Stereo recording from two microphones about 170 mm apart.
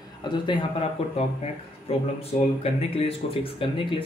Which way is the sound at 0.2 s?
25° left (ahead or behind).